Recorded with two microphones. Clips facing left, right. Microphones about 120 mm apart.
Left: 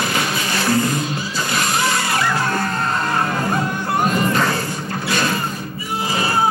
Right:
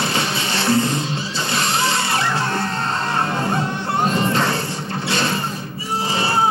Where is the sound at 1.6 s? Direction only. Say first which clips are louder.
Even; 30° right (ahead or behind).